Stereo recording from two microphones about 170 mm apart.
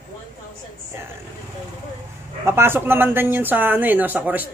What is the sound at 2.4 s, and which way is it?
Speech, 15° right (ahead or behind).